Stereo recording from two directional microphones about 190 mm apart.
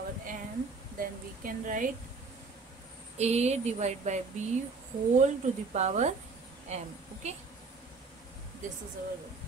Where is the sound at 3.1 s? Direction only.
35° right (ahead or behind).